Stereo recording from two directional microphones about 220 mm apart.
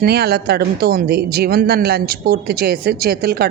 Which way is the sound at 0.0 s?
45° right (ahead or behind).